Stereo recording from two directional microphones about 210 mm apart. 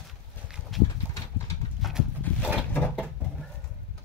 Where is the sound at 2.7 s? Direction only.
10° left (ahead or behind).